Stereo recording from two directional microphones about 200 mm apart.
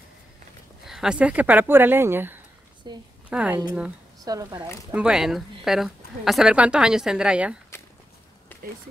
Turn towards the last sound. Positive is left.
turn(degrees=15)  # may be behind; listen again after turning